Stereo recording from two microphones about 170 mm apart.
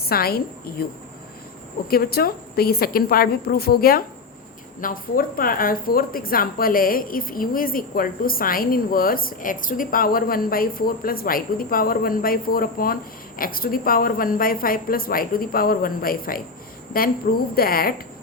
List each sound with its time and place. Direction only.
0.0 s a woman's voice: 65° left (ahead or behind)
1.9 s a woman's voice: 65° left (ahead or behind)